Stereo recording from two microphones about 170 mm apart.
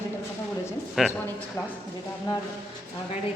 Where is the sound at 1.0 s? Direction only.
5° right (ahead or behind).